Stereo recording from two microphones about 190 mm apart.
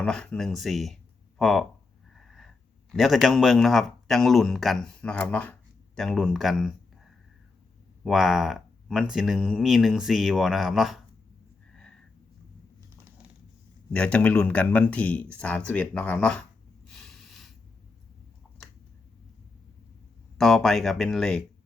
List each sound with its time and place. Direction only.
0.0 s speech: 5° left (ahead or behind)
2.1 s wheeze: centre (ahead or behind)
2.9 s speech: centre (ahead or behind)
8.0 s speech: centre (ahead or behind)
11.7 s a sound: 5° left (ahead or behind)
13.9 s speech: 5° left (ahead or behind)
16.9 s snort: centre (ahead or behind)
20.4 s speech: centre (ahead or behind)